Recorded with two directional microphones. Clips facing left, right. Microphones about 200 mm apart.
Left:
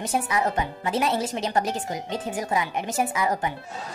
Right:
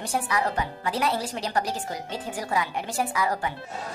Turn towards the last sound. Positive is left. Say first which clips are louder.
# left 2 dB
turn(degrees=20)  # may be behind; listen again after turning